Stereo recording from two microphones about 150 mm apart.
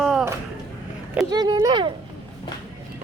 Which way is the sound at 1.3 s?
25° right (ahead or behind).